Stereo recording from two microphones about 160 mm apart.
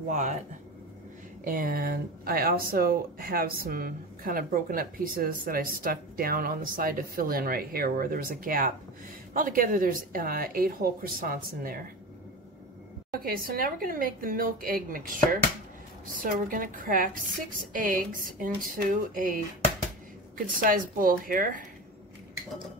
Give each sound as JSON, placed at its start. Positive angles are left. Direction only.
{"t": 0.1, "sound": "speech", "side_deg": -50}
{"t": 1.4, "sound": "speech", "side_deg": -60}
{"t": 13.1, "sound": "speech", "side_deg": -65}
{"t": 16.2, "sound": "speech", "side_deg": -60}
{"t": 20.5, "sound": "speech", "side_deg": -60}